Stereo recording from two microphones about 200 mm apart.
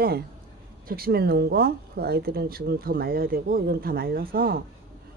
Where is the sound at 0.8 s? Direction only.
50° right (ahead or behind).